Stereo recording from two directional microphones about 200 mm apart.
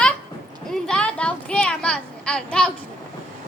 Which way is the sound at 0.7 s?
5° left (ahead or behind).